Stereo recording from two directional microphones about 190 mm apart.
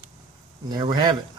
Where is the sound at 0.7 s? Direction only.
20° right (ahead or behind).